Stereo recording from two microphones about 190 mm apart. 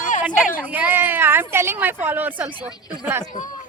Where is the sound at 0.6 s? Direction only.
10° right (ahead or behind).